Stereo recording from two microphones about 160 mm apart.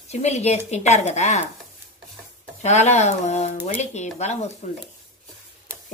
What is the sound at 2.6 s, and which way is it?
A woman's voice, 45° left (ahead or behind).